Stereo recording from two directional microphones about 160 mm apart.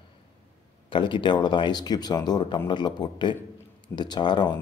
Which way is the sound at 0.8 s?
30° left (ahead or behind).